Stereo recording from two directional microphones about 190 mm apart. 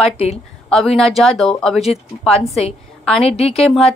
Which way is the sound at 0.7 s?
Centre (ahead or behind).